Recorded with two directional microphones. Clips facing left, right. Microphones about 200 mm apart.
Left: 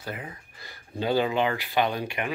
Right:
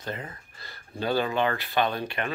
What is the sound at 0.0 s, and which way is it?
Speech, 10° left (ahead or behind).